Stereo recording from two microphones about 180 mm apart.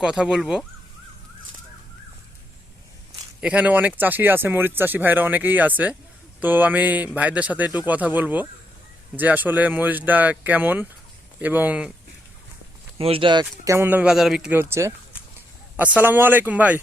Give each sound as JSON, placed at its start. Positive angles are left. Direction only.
{"t": 0.0, "sound": "speech", "side_deg": -5}
{"t": 3.4, "sound": "speech", "side_deg": -10}
{"t": 13.0, "sound": "speech", "side_deg": -30}
{"t": 13.4, "sound": "speech", "side_deg": -10}